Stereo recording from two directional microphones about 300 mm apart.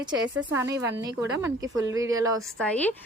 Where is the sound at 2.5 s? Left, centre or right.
Centre.